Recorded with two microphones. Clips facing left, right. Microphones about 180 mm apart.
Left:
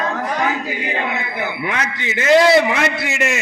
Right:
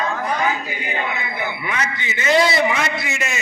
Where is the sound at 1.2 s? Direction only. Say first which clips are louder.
Left 3 dB; 65° left (ahead or behind).